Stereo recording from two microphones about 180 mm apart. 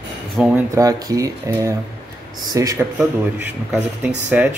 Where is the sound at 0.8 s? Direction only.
20° right (ahead or behind).